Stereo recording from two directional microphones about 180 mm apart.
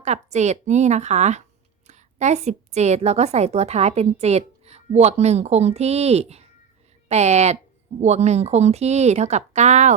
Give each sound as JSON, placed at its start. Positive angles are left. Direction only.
{"t": 0.0, "sound": "a woman's voice", "side_deg": -40}